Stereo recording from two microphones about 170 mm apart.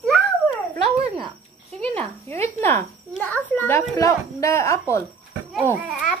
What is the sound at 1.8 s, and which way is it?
A child's voice, 10° left (ahead or behind).